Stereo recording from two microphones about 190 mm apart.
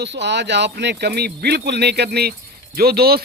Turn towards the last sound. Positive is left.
turn(degrees=-55)  # may be behind; listen again after turning